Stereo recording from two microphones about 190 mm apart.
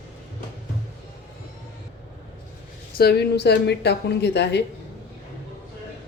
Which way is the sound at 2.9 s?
55° left (ahead or behind).